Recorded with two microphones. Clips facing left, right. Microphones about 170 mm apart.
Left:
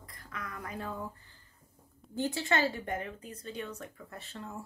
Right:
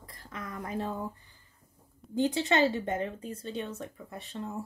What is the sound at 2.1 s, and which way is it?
Speech, 20° right (ahead or behind).